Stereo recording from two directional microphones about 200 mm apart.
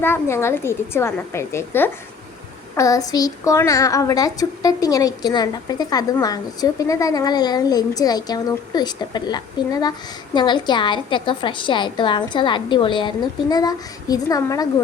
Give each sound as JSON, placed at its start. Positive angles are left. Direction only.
{"t": 0.0, "sound": "a woman's voice", "side_deg": 10}